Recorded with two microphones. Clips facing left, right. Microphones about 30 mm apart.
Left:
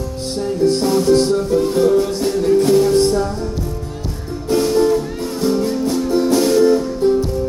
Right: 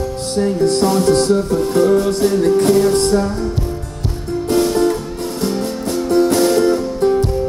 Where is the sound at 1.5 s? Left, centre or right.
Right.